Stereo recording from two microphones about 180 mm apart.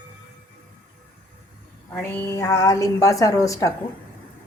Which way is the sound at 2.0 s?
10° left (ahead or behind).